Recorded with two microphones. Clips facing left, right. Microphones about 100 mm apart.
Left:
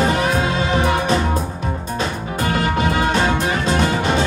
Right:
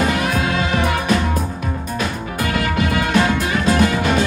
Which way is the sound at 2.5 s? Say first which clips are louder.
Left 1 dB; 35° left (ahead or behind).